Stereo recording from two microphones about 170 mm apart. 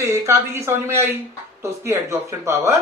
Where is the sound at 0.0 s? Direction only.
15° right (ahead or behind).